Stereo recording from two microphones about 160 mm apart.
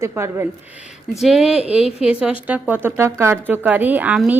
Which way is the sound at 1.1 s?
Centre (ahead or behind).